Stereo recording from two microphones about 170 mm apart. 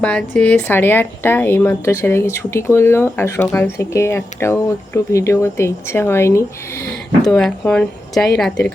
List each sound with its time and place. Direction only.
0.0 s speech: 5° left (ahead or behind)
7.3 s speech: 5° left (ahead or behind)